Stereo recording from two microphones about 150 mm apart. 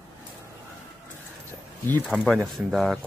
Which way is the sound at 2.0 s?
Centre (ahead or behind).